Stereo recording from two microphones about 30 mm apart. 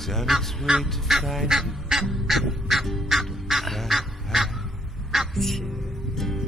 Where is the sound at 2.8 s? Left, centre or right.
Centre.